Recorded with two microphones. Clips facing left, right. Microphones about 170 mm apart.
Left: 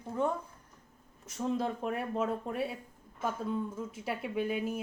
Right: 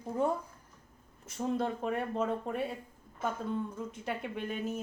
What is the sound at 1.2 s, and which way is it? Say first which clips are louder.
Speech: even; centre (ahead or behind).